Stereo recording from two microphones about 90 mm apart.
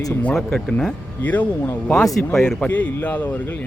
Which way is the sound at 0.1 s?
15° left (ahead or behind).